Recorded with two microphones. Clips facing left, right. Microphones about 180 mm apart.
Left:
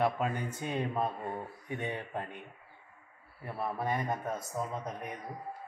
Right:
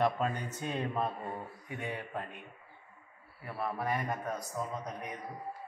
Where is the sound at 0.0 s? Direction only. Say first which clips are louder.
Even; 10° left (ahead or behind).